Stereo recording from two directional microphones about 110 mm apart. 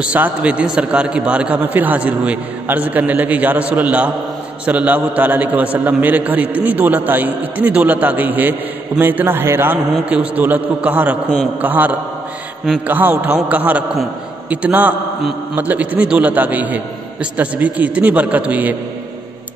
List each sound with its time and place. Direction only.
0.0 s a man's voice: 10° right (ahead or behind)